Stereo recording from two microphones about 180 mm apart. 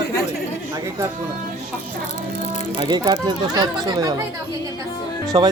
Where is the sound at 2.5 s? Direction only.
40° left (ahead or behind).